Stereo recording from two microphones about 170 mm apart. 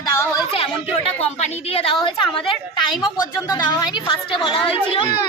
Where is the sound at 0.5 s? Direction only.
35° left (ahead or behind).